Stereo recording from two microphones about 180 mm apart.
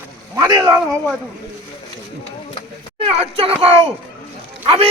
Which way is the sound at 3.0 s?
30° right (ahead or behind).